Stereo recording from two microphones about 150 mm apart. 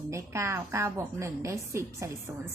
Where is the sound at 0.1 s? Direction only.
20° right (ahead or behind).